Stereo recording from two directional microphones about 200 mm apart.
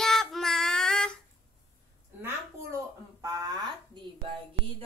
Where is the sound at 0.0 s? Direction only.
Centre (ahead or behind).